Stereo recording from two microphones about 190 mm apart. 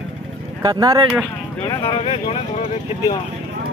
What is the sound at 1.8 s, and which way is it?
Speech, 30° left (ahead or behind).